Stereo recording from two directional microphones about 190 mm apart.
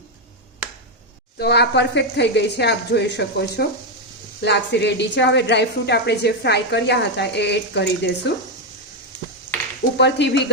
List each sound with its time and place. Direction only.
1.4 s a woman's voice: 60° left (ahead or behind)
10.0 s a woman's voice: 65° left (ahead or behind)